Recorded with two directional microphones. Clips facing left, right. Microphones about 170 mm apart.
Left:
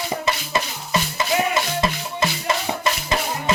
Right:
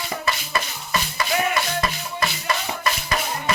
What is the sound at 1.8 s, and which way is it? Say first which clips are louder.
Music: left 3 dB; 25° left (ahead or behind).